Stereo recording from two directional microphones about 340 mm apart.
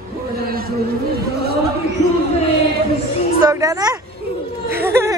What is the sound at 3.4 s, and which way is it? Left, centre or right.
Speech, centre.